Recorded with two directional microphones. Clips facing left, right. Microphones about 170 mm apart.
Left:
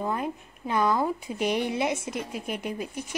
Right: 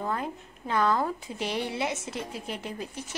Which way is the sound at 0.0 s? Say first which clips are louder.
Left 2 dB; 15° left (ahead or behind).